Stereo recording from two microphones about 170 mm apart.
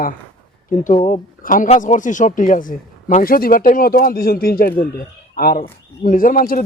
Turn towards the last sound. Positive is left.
turn(degrees=55)  # may be behind; listen again after turning